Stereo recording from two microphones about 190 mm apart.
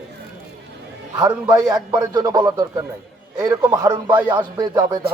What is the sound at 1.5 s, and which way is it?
A man's voice, 20° right (ahead or behind).